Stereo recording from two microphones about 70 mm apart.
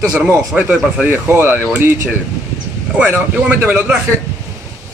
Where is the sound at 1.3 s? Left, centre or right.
Right.